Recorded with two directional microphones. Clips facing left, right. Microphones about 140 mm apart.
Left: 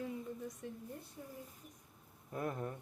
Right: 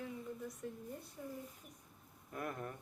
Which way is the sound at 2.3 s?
25° left (ahead or behind).